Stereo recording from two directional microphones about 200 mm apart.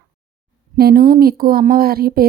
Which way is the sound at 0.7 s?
50° right (ahead or behind).